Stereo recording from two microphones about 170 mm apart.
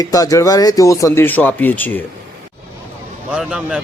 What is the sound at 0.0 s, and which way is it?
Speech, 20° left (ahead or behind).